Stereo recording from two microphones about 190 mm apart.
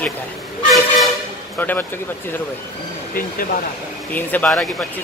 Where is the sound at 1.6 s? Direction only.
10° left (ahead or behind).